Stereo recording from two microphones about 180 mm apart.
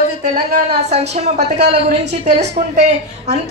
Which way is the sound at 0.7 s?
35° right (ahead or behind).